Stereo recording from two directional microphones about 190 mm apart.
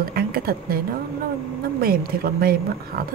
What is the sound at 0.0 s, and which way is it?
Speech, 50° right (ahead or behind).